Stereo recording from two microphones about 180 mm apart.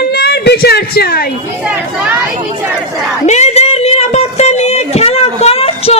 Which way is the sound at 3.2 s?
40° left (ahead or behind).